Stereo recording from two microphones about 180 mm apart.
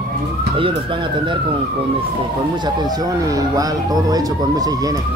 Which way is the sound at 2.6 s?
20° right (ahead or behind).